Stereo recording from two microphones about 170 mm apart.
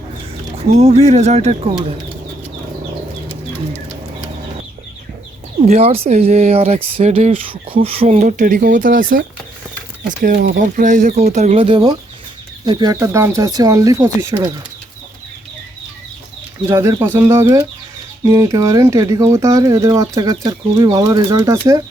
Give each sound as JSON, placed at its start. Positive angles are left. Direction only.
{"t": 0.7, "sound": "speech", "side_deg": -40}
{"t": 5.6, "sound": "speech", "side_deg": -35}
{"t": 10.6, "sound": "speech", "side_deg": -50}
{"t": 16.6, "sound": "speech", "side_deg": -15}